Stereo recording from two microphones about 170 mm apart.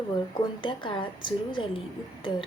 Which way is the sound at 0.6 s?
30° left (ahead or behind).